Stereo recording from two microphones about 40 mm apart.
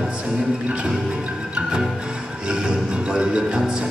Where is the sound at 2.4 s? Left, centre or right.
Right.